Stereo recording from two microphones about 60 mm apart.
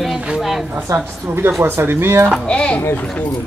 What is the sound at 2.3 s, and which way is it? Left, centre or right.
Speech, centre.